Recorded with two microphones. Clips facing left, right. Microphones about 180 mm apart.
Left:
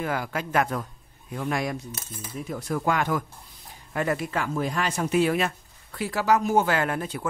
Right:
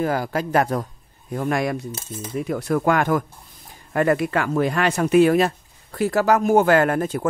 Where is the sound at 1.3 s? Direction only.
50° right (ahead or behind).